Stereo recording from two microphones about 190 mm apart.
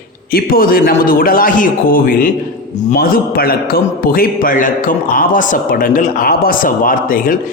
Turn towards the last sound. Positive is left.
turn(degrees=45)  # may be behind; listen again after turning